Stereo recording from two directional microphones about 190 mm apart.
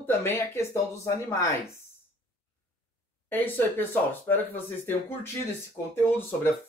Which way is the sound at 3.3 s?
10° left (ahead or behind).